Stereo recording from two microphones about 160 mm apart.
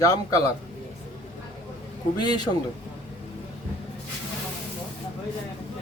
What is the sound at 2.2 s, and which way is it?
Speech, 25° left (ahead or behind).